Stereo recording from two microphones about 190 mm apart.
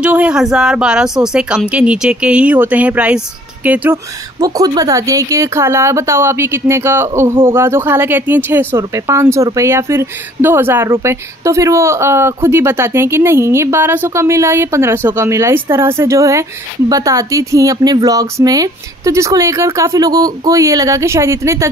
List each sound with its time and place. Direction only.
0.0 s a woman's voice: 5° right (ahead or behind)
4.4 s speech: 20° right (ahead or behind)